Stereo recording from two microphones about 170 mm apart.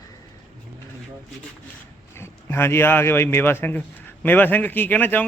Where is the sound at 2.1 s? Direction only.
15° left (ahead or behind).